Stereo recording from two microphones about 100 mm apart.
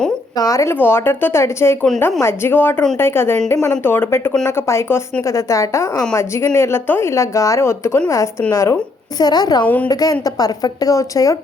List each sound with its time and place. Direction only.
0.3 s a woman's voice: 35° left (ahead or behind)
9.2 s a woman's voice: 40° left (ahead or behind)
9.6 s speech: 15° left (ahead or behind)
9.9 s a woman's voice: 40° left (ahead or behind)